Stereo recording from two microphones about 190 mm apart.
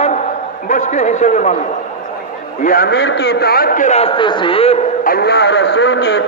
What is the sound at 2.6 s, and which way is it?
A man's voice, 50° left (ahead or behind).